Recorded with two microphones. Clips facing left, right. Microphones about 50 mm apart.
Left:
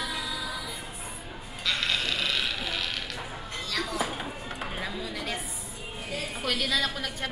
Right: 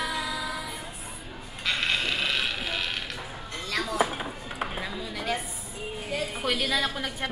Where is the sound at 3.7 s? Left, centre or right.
Centre.